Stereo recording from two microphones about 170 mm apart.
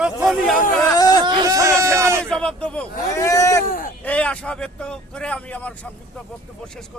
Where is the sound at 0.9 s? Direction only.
20° left (ahead or behind).